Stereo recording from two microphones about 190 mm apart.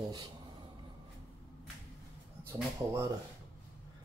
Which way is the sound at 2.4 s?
15° right (ahead or behind).